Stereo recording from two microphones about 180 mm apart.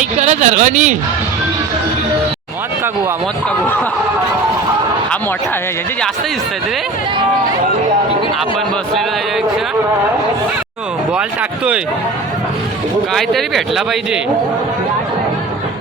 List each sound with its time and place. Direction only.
0.0 s speech: 40° right (ahead or behind)
11.1 s speech: 5° right (ahead or behind)
13.1 s speech: centre (ahead or behind)